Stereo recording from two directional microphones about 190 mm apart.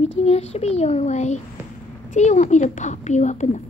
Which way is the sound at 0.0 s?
35° left (ahead or behind).